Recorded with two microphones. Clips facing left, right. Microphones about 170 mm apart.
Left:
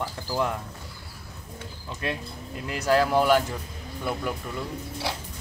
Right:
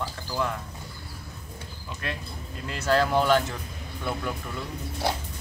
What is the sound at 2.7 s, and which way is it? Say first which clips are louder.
Speech: left 1 dB; 10° left (ahead or behind).